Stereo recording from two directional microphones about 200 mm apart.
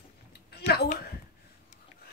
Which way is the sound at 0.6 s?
55° left (ahead or behind).